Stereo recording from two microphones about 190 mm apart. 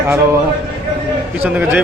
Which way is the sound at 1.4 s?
10° right (ahead or behind).